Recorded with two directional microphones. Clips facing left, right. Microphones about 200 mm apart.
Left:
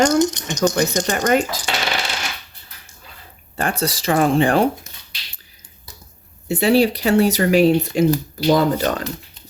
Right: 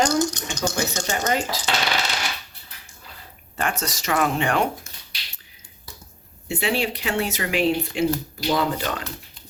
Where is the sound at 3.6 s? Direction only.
35° left (ahead or behind).